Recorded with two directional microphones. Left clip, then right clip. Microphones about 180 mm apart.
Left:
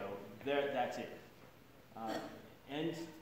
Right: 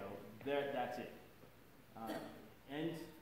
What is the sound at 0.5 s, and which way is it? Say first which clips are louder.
Speech: left 4 dB; 15° left (ahead or behind).